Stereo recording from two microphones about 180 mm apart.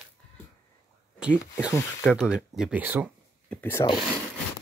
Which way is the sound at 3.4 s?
10° left (ahead or behind).